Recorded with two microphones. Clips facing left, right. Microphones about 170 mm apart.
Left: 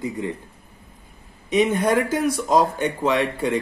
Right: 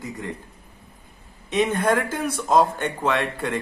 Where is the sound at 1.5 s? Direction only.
10° left (ahead or behind).